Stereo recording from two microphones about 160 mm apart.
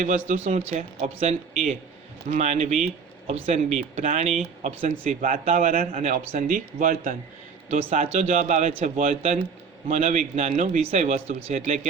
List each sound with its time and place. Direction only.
0.3 s speech: 45° right (ahead or behind)
8.0 s speech: 45° right (ahead or behind)